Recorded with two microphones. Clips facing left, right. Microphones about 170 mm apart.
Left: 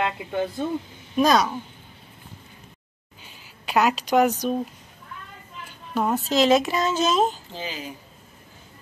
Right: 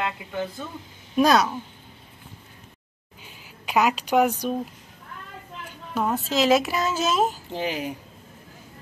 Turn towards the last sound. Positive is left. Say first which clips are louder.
# right 6 dB
turn(degrees=-65)  # may be behind; listen again after turning